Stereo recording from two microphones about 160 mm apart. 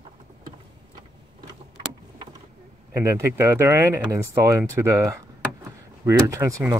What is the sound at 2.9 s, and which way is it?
Speech, 15° right (ahead or behind).